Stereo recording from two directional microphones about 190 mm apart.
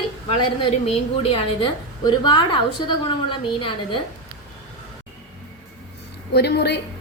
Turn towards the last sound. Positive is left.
turn(degrees=60)  # may be behind; listen again after turning